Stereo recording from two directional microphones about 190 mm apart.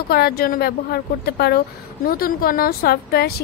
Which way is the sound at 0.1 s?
50° left (ahead or behind).